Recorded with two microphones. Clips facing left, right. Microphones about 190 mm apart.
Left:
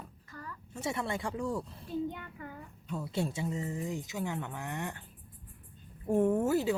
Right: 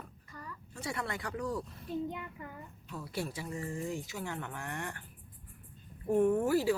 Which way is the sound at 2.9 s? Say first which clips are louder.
Left 4 dB; 25° left (ahead or behind).